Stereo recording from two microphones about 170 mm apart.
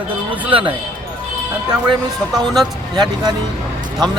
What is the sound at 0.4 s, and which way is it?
Speech, 30° right (ahead or behind).